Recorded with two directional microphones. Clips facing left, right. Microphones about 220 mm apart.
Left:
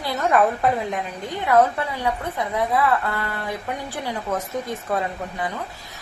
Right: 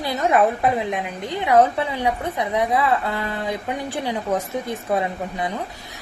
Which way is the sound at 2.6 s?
15° right (ahead or behind).